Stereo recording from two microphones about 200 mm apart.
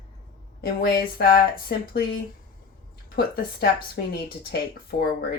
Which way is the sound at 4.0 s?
55° left (ahead or behind).